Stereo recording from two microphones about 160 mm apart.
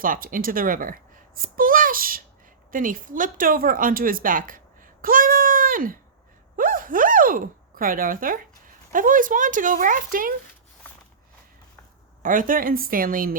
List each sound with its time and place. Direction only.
0.0 s a child's voice: 60° right (ahead or behind)
12.2 s a child's voice: 55° right (ahead or behind)